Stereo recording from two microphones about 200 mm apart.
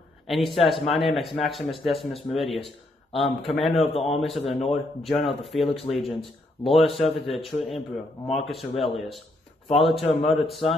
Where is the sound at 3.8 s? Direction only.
30° left (ahead or behind).